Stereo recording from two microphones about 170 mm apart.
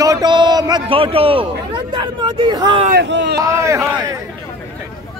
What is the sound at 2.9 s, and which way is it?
Speech, 80° right.